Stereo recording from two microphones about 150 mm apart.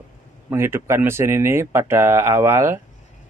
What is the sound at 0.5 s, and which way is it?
Speech, 15° right (ahead or behind).